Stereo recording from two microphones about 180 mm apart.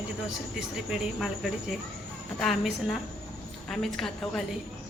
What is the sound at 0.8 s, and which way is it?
A woman's voice, centre (ahead or behind).